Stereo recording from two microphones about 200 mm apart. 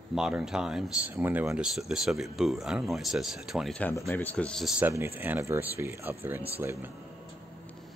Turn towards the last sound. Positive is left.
turn(degrees=-10)  # may be behind; listen again after turning